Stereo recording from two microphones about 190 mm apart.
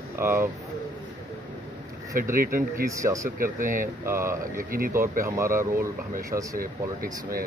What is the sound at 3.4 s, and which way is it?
Speech, 45° right (ahead or behind).